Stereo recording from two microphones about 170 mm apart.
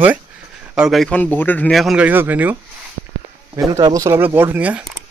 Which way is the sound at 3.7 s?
20° right (ahead or behind).